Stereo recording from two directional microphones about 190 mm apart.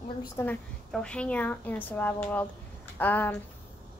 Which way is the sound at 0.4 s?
5° left (ahead or behind).